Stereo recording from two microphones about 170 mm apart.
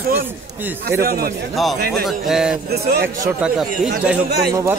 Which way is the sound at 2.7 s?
70° right (ahead or behind).